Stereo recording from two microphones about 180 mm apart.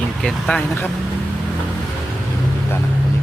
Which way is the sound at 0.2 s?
5° left (ahead or behind).